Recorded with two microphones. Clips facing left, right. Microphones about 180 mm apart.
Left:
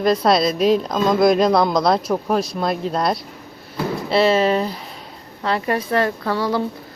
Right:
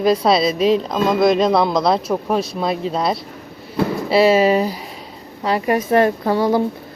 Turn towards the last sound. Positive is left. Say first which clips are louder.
# right 4 dB
turn(degrees=-20)  # may be behind; listen again after turning